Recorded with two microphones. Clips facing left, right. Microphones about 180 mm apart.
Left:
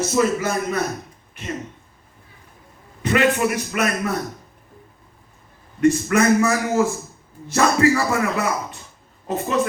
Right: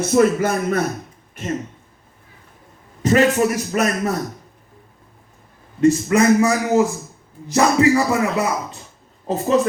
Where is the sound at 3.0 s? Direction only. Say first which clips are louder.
Right 3 dB; 40° right (ahead or behind).